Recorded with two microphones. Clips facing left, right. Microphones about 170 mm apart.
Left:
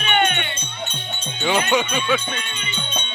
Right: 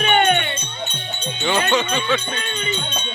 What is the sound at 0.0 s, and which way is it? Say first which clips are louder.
Music: right 4 dB; 40° right (ahead or behind).